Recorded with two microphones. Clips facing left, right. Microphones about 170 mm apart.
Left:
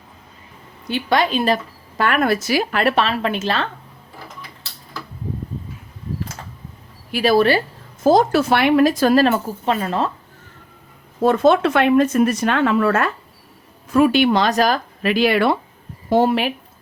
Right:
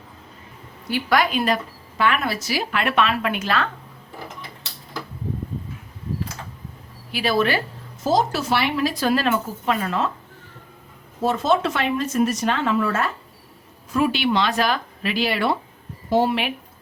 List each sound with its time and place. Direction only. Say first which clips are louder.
0.9 s a woman's voice: left 2 dB; 25° left (ahead or behind)
2.0 s a woman's voice: left 4 dB; 45° left (ahead or behind)
2.8 s a woman's voice: left 3 dB; 35° left (ahead or behind)
7.1 s speech: left 6 dB; 40° left (ahead or behind)
8.0 s a woman's voice: left 6 dB; 55° left (ahead or behind); by 10.1 s 30° left (ahead or behind)
11.3 s a woman's voice: left 6 dB; 60° left (ahead or behind)